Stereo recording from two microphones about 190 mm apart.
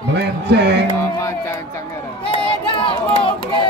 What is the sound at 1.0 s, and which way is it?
Music, 15° left (ahead or behind).